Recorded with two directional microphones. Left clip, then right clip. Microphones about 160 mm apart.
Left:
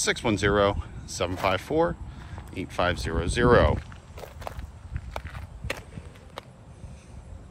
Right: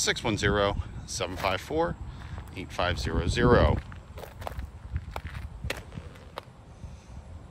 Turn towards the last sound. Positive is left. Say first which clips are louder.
# left 2 dB
turn(degrees=5)  # may be behind; listen again after turning